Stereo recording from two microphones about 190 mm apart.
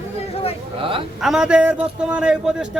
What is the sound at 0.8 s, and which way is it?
Speech, 25° right (ahead or behind).